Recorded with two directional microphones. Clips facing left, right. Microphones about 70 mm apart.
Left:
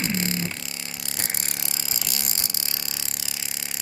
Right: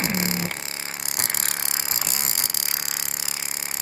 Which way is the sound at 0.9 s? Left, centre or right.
Right.